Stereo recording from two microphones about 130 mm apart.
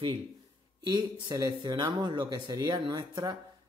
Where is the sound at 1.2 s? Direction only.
30° right (ahead or behind).